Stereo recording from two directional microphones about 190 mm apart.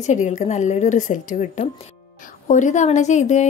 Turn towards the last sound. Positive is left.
turn(degrees=40)  # may be behind; listen again after turning